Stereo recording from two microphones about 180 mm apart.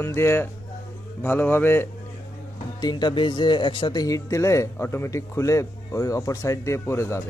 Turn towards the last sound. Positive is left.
turn(degrees=15)  # may be behind; listen again after turning